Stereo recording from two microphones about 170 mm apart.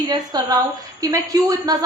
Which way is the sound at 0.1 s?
25° right (ahead or behind).